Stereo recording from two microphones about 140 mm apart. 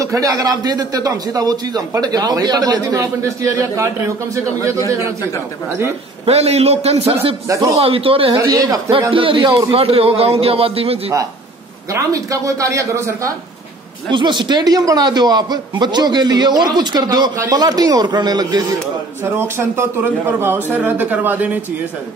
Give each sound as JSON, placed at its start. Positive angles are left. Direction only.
{"t": 0.0, "sound": "a man's voice", "side_deg": -25}
{"t": 6.2, "sound": "a man's voice", "side_deg": -45}
{"t": 7.4, "sound": "a man's voice", "side_deg": -25}
{"t": 7.7, "sound": "a man's voice", "side_deg": -40}
{"t": 8.4, "sound": "a man's voice", "side_deg": -25}
{"t": 9.1, "sound": "a man's voice", "side_deg": -40}
{"t": 9.5, "sound": "a man's voice", "side_deg": -25}
{"t": 9.8, "sound": "a man's voice", "side_deg": -45}
{"t": 11.9, "sound": "a man's voice", "side_deg": -25}
{"t": 14.1, "sound": "a man's voice", "side_deg": -35}
{"t": 19.2, "sound": "a man's voice", "side_deg": -15}